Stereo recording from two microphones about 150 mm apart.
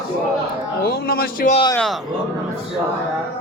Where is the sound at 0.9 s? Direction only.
85° left.